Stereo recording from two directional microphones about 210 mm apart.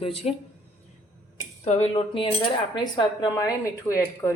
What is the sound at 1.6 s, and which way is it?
Speech, 30° left (ahead or behind).